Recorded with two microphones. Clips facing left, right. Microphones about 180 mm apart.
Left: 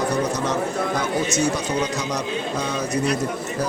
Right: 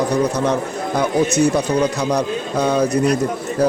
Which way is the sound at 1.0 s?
60° right (ahead or behind).